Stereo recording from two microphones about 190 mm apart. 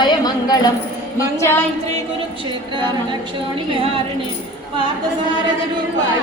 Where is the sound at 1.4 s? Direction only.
10° left (ahead or behind).